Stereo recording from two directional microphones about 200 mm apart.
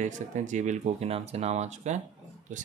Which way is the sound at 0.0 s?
35° right (ahead or behind).